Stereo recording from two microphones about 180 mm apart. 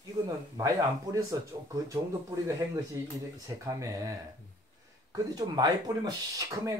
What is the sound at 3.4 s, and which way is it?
Speech, 20° right (ahead or behind).